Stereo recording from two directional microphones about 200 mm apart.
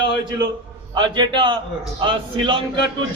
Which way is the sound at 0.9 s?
20° right (ahead or behind).